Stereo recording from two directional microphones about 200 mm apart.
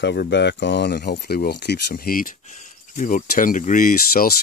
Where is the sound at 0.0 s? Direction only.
60° left (ahead or behind).